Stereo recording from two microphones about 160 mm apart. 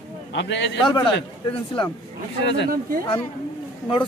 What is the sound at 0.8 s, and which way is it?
Speech, 25° left (ahead or behind).